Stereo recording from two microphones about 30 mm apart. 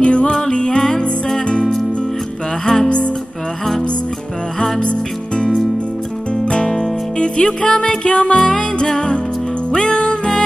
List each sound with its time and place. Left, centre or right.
0.0 s music: left
0.3 s music: left
2.6 s music: centre
4.8 s music: left
9.7 s music: left